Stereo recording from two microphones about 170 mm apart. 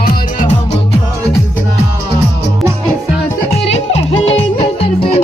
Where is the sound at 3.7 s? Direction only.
35° left (ahead or behind).